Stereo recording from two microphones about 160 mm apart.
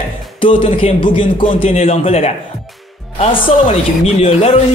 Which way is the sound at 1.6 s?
45° left (ahead or behind).